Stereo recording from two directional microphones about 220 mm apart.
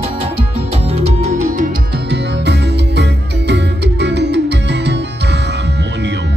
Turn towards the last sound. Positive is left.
turn(degrees=-50)  # may be behind; listen again after turning